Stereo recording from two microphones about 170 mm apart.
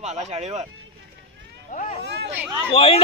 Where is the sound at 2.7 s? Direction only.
35° left (ahead or behind).